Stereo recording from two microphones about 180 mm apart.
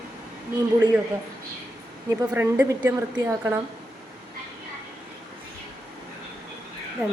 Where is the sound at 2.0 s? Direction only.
15° right (ahead or behind).